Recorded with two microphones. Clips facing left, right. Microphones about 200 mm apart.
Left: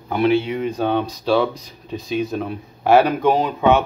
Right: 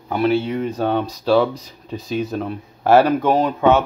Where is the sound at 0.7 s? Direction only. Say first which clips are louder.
Even; 5° right (ahead or behind).